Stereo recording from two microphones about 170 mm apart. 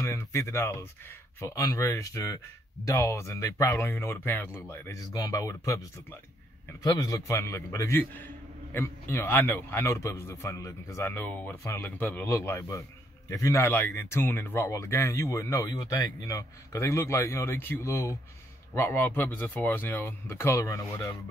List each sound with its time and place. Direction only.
0.0 s speech: 15° left (ahead or behind)